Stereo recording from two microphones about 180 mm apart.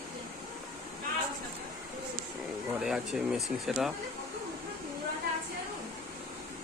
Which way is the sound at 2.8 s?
5° right (ahead or behind).